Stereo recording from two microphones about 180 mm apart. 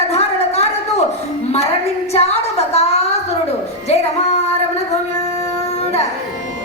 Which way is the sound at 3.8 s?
35° left (ahead or behind).